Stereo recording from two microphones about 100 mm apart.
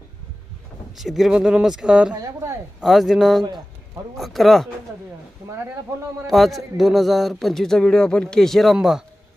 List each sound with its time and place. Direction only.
0.9 s a man's voice: centre (ahead or behind)
2.2 s speech: 30° right (ahead or behind)
2.8 s a man's voice: centre (ahead or behind)
6.2 s a man's voice: centre (ahead or behind)